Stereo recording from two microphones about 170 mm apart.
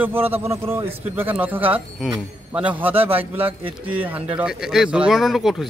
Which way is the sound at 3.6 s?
30° right (ahead or behind).